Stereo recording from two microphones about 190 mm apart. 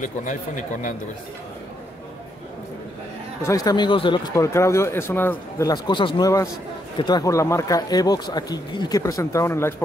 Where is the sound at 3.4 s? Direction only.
20° left (ahead or behind).